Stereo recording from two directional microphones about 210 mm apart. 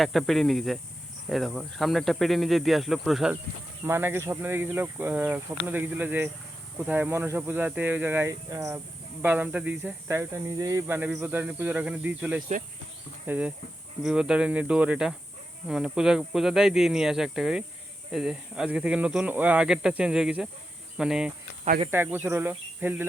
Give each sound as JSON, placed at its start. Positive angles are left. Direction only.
{"t": 0.0, "sound": "speech", "side_deg": 0}
{"t": 21.6, "sound": "speech", "side_deg": -30}
{"t": 21.8, "sound": "speech", "side_deg": -10}